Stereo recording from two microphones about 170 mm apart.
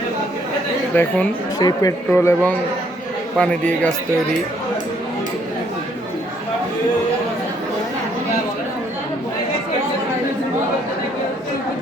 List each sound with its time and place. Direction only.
0.9 s a man's voice: 10° left (ahead or behind)
1.5 s speech: 20° left (ahead or behind)
2.0 s a man's voice: 10° left (ahead or behind)